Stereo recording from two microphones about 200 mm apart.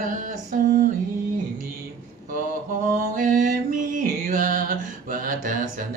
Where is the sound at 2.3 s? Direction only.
45° right (ahead or behind).